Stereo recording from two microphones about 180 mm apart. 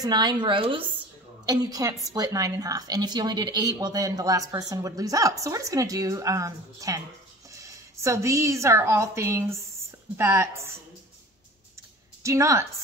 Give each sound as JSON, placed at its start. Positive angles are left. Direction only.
{"t": 0.0, "sound": "a woman's voice", "side_deg": -20}
{"t": 12.2, "sound": "a woman's voice", "side_deg": -15}